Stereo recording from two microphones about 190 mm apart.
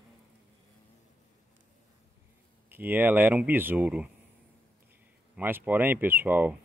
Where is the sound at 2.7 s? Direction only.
10° right (ahead or behind).